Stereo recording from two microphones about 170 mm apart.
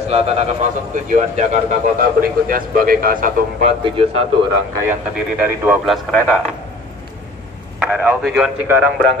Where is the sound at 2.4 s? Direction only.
55° right (ahead or behind).